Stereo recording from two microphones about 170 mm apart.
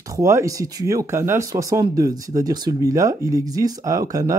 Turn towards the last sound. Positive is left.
turn(degrees=-20)  # may be behind; listen again after turning